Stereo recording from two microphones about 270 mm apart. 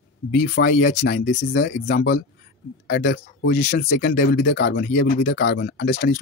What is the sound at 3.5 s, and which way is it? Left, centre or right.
Speech, left.